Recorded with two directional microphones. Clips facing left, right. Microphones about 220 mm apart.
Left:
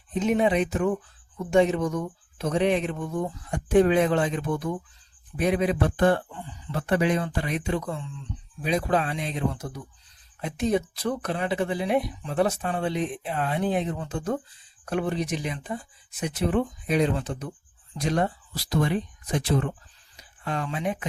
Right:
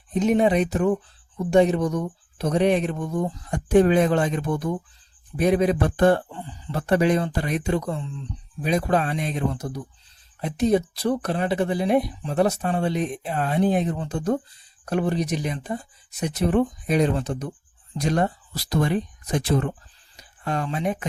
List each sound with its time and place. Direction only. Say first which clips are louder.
0.1 s speech: right 3 dB; 40° right (ahead or behind)